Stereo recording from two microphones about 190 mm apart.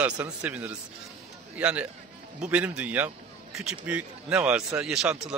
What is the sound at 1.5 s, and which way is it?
A man's voice, 5° right (ahead or behind).